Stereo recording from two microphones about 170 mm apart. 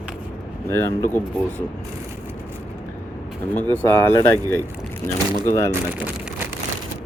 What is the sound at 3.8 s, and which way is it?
Speech, 15° left (ahead or behind).